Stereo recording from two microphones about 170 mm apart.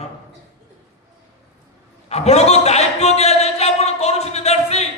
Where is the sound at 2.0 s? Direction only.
40° left (ahead or behind).